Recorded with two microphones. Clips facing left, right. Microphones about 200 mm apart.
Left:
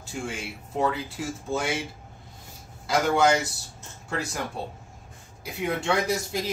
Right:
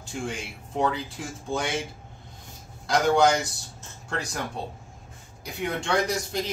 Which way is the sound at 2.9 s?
5° left (ahead or behind).